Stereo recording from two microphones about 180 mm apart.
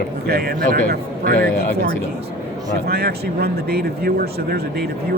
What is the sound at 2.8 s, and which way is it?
Speech, 60° right (ahead or behind).